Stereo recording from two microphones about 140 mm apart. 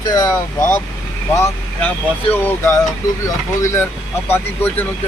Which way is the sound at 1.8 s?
10° left (ahead or behind).